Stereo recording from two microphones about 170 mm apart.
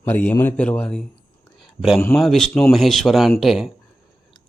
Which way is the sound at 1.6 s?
Centre (ahead or behind).